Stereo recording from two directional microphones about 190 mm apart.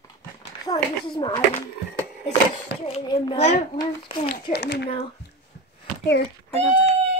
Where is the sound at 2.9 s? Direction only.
25° left (ahead or behind).